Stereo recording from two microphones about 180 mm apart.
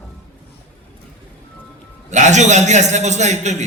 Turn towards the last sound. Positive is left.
turn(degrees=-40)  # may be behind; listen again after turning